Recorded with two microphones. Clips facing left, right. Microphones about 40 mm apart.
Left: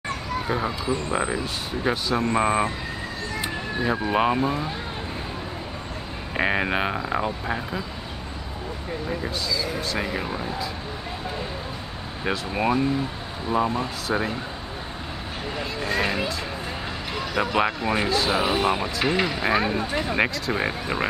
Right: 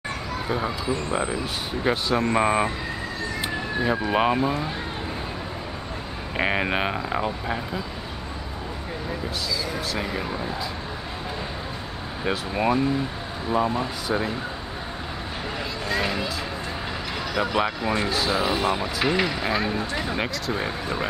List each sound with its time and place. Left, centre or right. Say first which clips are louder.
0.5 s speech: even; centre
1.4 s speech: right 1 dB; centre
6.3 s speech: left 1 dB; centre
9.6 s speech: left 1 dB; centre
12.3 s speech: even; centre
15.8 s speech: left 2 dB; centre
17.3 s speech: left 1 dB; centre
18.3 s speech: even; centre
19.4 s speech: left 2 dB; centre
20.5 s speech: left 2 dB; centre